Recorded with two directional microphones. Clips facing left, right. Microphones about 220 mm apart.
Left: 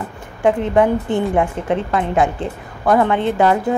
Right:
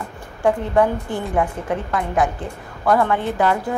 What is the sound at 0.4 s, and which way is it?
A woman's voice, 20° left (ahead or behind).